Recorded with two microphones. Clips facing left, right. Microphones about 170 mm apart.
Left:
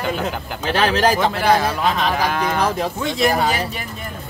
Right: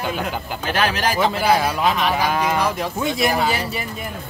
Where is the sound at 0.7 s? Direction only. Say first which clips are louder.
Left 3 dB; 30° left (ahead or behind).